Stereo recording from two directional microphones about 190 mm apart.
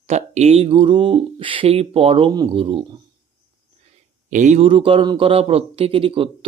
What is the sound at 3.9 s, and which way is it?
A man's voice, 40° right (ahead or behind).